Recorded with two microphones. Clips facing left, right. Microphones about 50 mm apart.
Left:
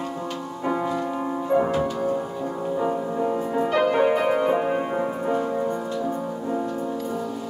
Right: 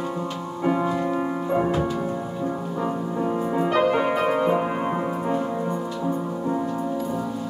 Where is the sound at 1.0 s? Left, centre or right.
Centre.